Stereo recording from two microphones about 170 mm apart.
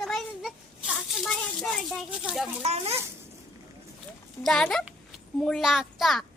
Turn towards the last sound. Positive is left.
turn(degrees=0)  # may be behind; listen again after turning